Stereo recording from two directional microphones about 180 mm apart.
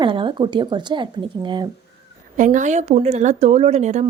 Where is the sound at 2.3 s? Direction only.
45° right (ahead or behind).